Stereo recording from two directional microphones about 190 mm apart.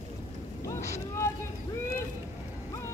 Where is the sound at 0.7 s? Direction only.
15° left (ahead or behind).